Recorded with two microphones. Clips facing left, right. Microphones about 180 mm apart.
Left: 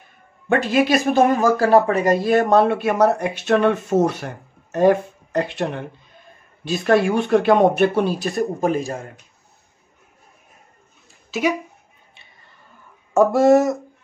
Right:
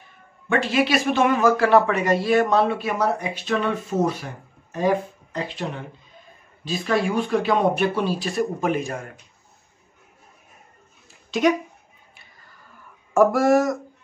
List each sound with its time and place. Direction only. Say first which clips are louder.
0.5 s speech: left 3 dB; 45° left (ahead or behind); by 9.1 s 30° left (ahead or behind)
11.2 s speech: right 2 dB; 5° left (ahead or behind)
13.1 s speech: left 3 dB; 25° left (ahead or behind)